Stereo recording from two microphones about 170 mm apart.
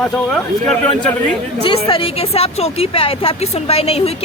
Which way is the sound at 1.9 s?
30° left (ahead or behind).